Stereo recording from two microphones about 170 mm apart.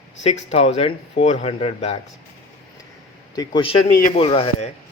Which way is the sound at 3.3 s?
25° left (ahead or behind).